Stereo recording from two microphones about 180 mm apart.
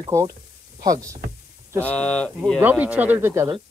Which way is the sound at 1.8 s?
5° left (ahead or behind).